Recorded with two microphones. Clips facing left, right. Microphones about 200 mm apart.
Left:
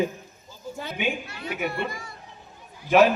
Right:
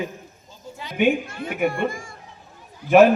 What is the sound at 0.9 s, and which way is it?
Speech, 50° right (ahead or behind).